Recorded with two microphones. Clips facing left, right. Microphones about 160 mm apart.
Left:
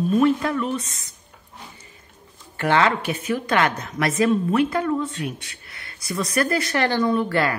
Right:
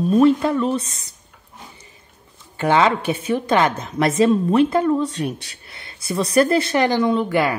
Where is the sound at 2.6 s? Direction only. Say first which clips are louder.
Right 3 dB; 20° right (ahead or behind).